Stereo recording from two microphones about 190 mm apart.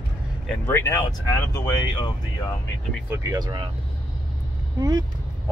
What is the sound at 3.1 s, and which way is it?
Speech, 20° right (ahead or behind).